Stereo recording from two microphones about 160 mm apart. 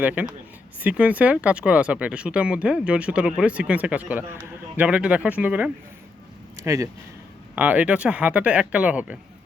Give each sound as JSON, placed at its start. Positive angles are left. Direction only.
{"t": 0.0, "sound": "speech", "side_deg": -10}